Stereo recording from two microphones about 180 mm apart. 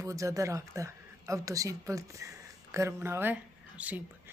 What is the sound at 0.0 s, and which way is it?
A woman's voice, 15° right (ahead or behind).